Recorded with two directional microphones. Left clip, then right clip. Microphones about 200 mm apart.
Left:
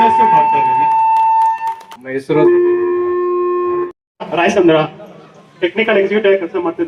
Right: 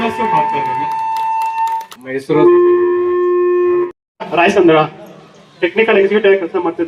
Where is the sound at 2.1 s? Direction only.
35° right (ahead or behind).